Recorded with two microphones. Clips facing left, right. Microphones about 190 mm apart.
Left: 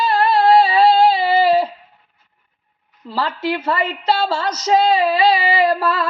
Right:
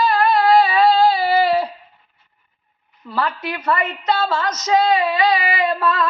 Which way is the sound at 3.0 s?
25° left (ahead or behind).